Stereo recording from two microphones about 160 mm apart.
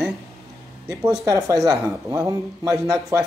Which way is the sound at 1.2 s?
20° right (ahead or behind).